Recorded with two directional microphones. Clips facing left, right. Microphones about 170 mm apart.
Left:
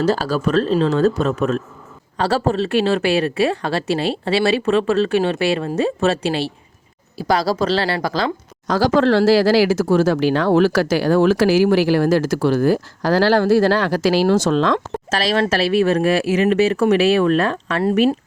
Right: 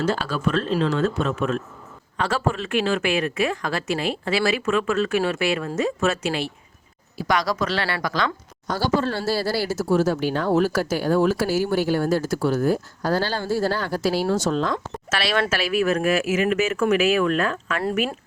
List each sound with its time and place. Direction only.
0.0 s speech: 35° left (ahead or behind)
8.6 s speech: 90° left
15.1 s speech: 35° left (ahead or behind)